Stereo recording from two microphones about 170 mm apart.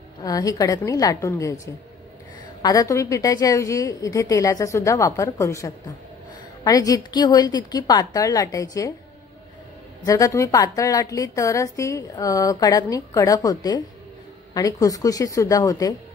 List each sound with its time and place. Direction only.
0.2 s a woman's voice: 20° left (ahead or behind)
2.6 s a woman's voice: 20° left (ahead or behind)
10.0 s a woman's voice: 20° left (ahead or behind)